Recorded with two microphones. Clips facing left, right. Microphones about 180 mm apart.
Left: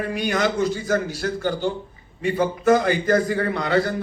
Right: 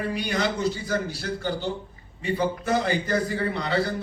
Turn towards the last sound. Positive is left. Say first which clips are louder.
# left 4 dB
turn(degrees=50)  # may be behind; listen again after turning